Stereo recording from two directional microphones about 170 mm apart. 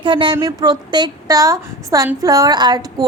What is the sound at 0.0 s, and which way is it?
A woman's voice, 30° right (ahead or behind).